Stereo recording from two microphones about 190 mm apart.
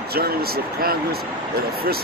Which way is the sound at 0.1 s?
55° right (ahead or behind).